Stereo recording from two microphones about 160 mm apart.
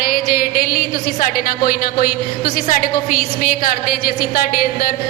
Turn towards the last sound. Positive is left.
turn(degrees=65)  # may be behind; listen again after turning